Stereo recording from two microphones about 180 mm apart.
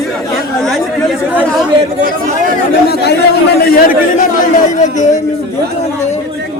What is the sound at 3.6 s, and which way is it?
Speech, 55° left (ahead or behind).